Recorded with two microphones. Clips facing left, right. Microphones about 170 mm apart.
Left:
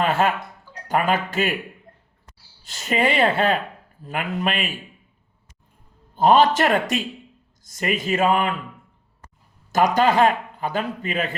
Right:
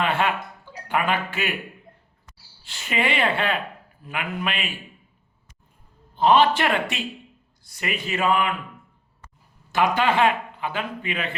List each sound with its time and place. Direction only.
0.0 s a sound: 40° left (ahead or behind)
0.9 s a man's voice: 40° left (ahead or behind)
2.6 s a man's voice: 40° left (ahead or behind)
6.1 s a man's voice: 45° left (ahead or behind)
9.7 s a man's voice: 40° left (ahead or behind)